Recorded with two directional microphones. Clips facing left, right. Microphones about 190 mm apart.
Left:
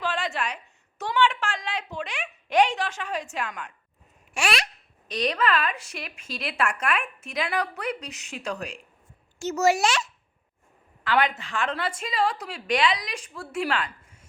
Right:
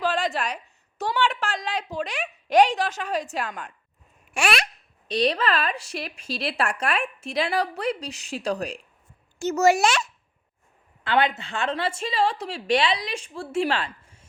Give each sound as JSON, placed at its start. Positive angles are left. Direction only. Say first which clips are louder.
{"t": 0.0, "sound": "a woman's voice", "louder": "right 4 dB", "side_deg": -40}
{"t": 4.4, "sound": "babbling", "louder": "right 2 dB", "side_deg": -55}
{"t": 5.0, "sound": "a woman's voice", "louder": "right 2 dB", "side_deg": -30}
{"t": 9.4, "sound": "a child's voice", "louder": "right 3 dB", "side_deg": -50}
{"t": 11.0, "sound": "a woman's voice", "louder": "right 1 dB", "side_deg": -25}